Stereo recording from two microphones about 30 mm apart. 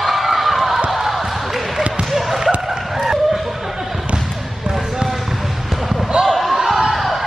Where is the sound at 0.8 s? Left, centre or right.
Centre.